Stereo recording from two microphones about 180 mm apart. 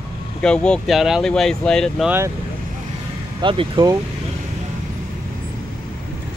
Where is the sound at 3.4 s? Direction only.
30° right (ahead or behind).